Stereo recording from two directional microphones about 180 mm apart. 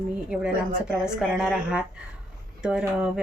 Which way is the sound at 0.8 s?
5° right (ahead or behind).